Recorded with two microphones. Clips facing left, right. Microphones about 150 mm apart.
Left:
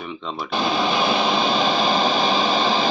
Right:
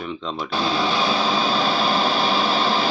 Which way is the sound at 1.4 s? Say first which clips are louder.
Left 1 dB; 5° right (ahead or behind).